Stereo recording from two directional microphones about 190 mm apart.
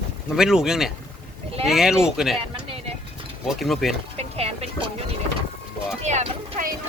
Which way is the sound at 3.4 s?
Centre (ahead or behind).